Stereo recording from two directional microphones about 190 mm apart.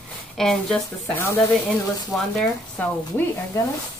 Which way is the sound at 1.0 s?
15° left (ahead or behind).